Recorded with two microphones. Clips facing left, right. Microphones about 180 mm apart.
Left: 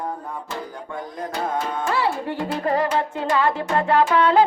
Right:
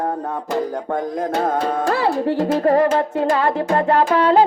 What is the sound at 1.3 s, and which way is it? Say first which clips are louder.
Child singing: right 5 dB; 55° right (ahead or behind).